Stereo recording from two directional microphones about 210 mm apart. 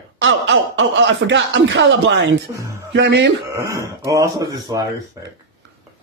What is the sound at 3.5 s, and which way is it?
Speech, 15° right (ahead or behind).